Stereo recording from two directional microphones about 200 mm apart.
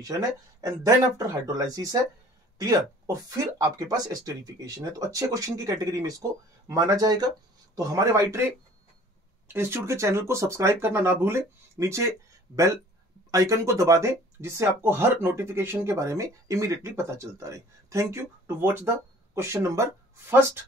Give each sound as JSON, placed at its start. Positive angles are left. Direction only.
{"t": 0.0, "sound": "speech", "side_deg": -15}
{"t": 13.3, "sound": "speech", "side_deg": -15}